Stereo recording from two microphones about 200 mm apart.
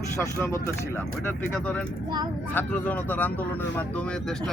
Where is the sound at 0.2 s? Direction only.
15° left (ahead or behind).